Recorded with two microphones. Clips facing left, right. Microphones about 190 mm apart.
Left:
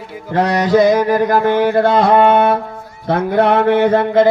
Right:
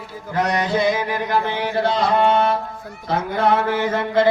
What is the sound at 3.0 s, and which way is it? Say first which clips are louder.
Mantra: left 6 dB; 65° left (ahead or behind).